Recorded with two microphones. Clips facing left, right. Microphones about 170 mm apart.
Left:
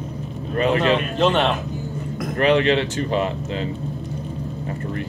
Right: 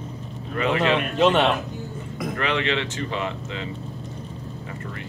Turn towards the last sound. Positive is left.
turn(degrees=35)  # may be behind; listen again after turning